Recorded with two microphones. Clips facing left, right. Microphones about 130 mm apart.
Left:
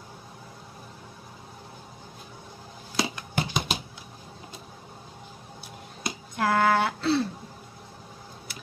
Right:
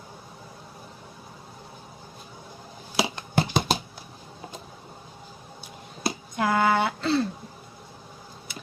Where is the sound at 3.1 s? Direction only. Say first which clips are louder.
Right 4 dB; 35° right (ahead or behind).